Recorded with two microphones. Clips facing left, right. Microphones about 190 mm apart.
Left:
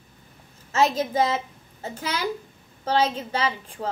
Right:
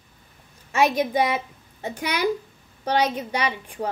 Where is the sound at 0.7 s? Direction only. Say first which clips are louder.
Right 1 dB; 15° right (ahead or behind).